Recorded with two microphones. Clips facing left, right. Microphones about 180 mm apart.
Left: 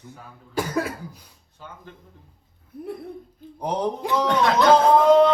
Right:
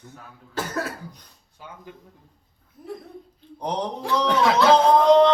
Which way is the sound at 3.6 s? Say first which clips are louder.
Left 2 dB; 10° left (ahead or behind).